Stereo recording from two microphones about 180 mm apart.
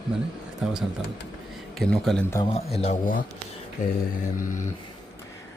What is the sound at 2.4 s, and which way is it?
Speech, 35° left (ahead or behind).